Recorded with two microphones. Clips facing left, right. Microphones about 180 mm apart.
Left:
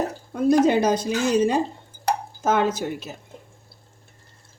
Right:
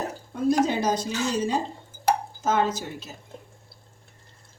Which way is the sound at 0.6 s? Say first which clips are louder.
Left 5 dB; 60° left (ahead or behind).